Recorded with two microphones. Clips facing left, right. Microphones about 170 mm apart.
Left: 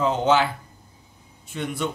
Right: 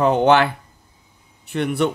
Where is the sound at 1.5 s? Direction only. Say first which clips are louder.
Right 8 dB; 65° right (ahead or behind).